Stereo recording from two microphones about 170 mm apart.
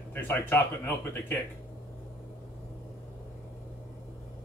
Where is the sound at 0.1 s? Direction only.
15° left (ahead or behind).